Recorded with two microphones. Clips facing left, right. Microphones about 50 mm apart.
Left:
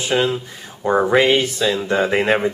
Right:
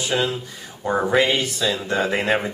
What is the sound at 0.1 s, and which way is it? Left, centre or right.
Speech, centre.